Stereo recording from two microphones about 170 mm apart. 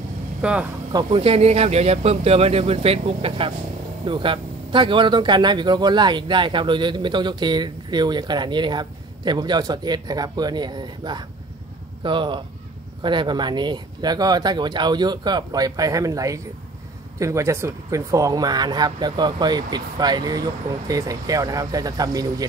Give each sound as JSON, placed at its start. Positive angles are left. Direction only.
{"t": 0.4, "sound": "speech", "side_deg": -5}
{"t": 0.9, "sound": "speech", "side_deg": -35}